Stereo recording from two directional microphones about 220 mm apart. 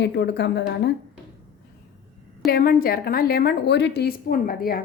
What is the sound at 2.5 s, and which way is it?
A woman's voice, 40° left (ahead or behind).